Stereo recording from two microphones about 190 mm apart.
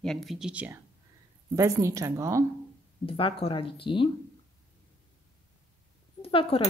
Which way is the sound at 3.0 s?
30° left (ahead or behind).